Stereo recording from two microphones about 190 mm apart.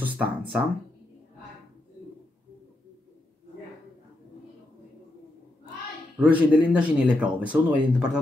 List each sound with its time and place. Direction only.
0.0 s speech: 10° right (ahead or behind)
6.1 s speech: 10° right (ahead or behind)